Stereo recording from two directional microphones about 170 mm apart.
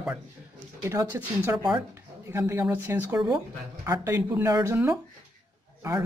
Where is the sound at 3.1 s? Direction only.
5° right (ahead or behind).